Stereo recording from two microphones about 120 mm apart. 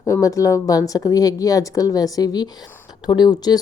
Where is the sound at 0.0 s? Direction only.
30° left (ahead or behind).